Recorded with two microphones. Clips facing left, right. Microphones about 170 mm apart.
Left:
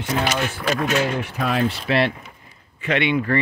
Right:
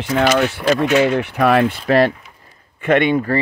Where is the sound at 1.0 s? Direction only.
65° right (ahead or behind).